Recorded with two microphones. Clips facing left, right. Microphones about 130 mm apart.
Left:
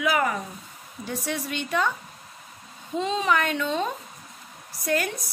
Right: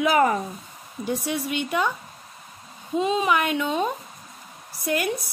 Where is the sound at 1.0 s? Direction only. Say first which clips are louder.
Right 4 dB; 15° right (ahead or behind).